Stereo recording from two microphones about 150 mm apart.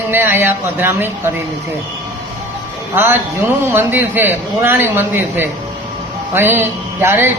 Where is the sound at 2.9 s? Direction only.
15° right (ahead or behind).